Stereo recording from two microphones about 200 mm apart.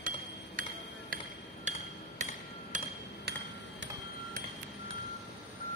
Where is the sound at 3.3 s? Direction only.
55° right (ahead or behind).